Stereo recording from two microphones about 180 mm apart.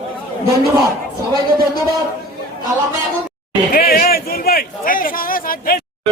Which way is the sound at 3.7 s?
55° left (ahead or behind).